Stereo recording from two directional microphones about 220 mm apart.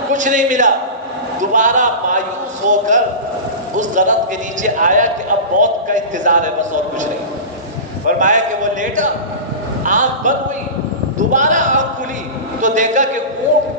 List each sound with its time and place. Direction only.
0.1 s a man's voice: 35° right (ahead or behind)
8.1 s a man's voice: 35° right (ahead or behind)